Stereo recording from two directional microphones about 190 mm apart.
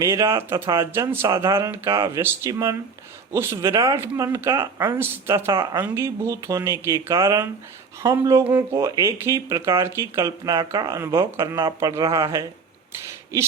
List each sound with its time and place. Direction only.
0.0 s speech: 15° right (ahead or behind)